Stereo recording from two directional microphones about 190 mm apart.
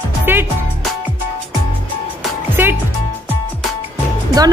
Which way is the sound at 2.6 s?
10° right (ahead or behind).